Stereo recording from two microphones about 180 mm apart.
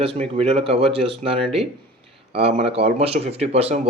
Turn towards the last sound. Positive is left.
turn(degrees=-35)  # may be behind; listen again after turning